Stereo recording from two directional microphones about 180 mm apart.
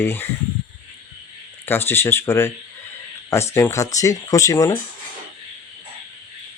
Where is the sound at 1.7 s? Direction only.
15° left (ahead or behind).